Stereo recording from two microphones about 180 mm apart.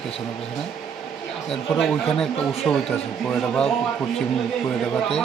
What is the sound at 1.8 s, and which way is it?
A man's voice, centre (ahead or behind).